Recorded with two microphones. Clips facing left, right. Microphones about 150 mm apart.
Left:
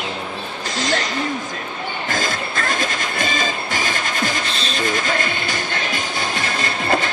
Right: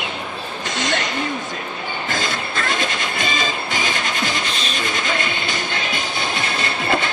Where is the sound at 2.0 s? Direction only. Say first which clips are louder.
Left 1 dB; 45° left (ahead or behind).